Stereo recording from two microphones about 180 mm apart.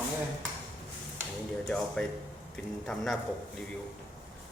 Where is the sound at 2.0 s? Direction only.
5° left (ahead or behind).